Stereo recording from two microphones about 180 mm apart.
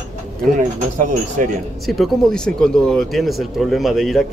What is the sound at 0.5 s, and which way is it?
Speech, 45° right (ahead or behind).